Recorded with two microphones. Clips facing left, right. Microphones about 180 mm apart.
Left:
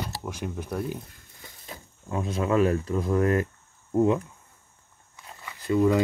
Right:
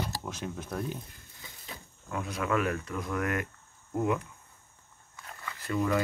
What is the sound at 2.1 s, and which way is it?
Speech, 25° left (ahead or behind).